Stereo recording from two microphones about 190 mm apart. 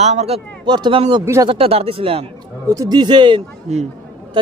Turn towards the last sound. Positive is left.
turn(degrees=-35)  # may be behind; listen again after turning